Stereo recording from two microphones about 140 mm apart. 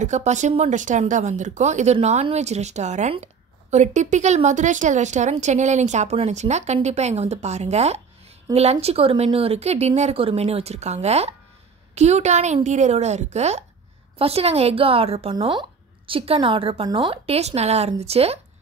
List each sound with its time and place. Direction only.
0.0 s speech: 55° right (ahead or behind)
15.3 s a woman's voice: 35° right (ahead or behind)